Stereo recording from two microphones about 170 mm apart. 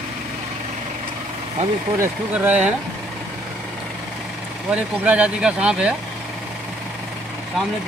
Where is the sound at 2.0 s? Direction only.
10° right (ahead or behind).